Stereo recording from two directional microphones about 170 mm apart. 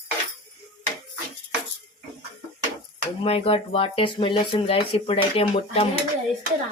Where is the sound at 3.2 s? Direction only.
35° left (ahead or behind).